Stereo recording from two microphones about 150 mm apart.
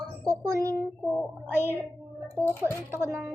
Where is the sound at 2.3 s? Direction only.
15° left (ahead or behind).